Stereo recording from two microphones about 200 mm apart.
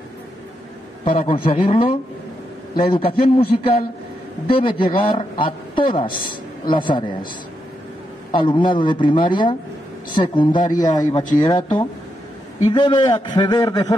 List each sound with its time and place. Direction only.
1.0 s a man's voice: 35° left (ahead or behind)
8.3 s a man's voice: 25° left (ahead or behind)